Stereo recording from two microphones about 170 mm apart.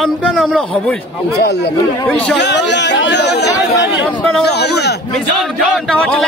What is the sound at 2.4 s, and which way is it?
A man's voice, 90° left.